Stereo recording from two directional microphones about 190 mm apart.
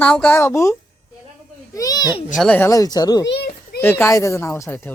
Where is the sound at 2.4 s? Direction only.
10° left (ahead or behind).